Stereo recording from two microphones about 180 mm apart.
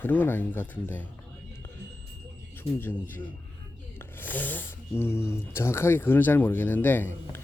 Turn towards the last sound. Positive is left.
turn(degrees=10)  # may be behind; listen again after turning